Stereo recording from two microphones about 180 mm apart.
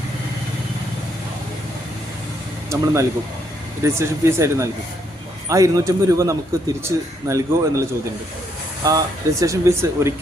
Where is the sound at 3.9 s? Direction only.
15° right (ahead or behind).